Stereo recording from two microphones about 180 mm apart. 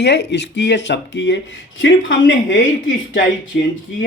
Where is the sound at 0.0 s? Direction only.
70° left (ahead or behind); by 3.5 s 90° left.